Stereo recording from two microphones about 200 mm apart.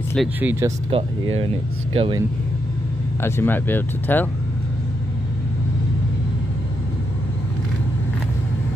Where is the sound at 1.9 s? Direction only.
25° right (ahead or behind).